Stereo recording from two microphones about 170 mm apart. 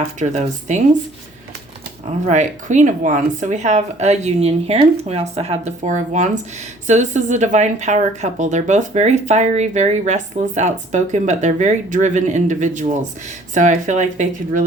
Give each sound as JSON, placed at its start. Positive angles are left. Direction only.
{"t": 0.2, "sound": "a woman's voice", "side_deg": -45}
{"t": 2.2, "sound": "a woman's voice", "side_deg": -45}